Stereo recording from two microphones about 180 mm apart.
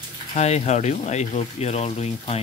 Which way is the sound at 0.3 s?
40° left (ahead or behind).